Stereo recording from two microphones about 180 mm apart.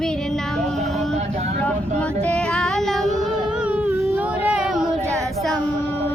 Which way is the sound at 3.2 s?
5° right (ahead or behind).